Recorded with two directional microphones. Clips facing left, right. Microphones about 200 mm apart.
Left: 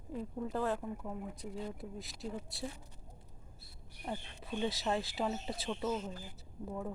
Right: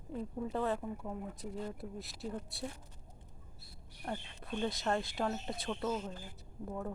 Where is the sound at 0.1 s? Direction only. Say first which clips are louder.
Even; centre (ahead or behind).